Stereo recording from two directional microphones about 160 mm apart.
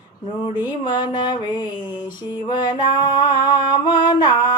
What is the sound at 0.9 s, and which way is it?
Music, 25° left (ahead or behind).